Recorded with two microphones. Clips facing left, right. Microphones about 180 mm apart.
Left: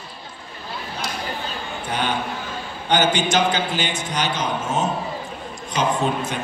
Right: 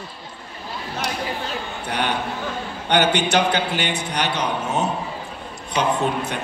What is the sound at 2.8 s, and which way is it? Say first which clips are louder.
A man's voice: even; 65° right (ahead or behind).